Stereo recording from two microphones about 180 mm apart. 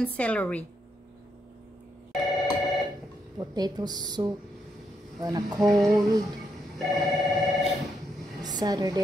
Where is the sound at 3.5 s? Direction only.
20° right (ahead or behind).